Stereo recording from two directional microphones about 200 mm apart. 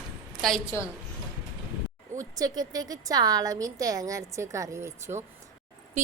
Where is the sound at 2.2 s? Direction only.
20° right (ahead or behind).